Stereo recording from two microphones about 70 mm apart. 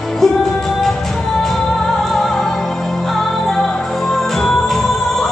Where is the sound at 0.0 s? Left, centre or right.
Centre.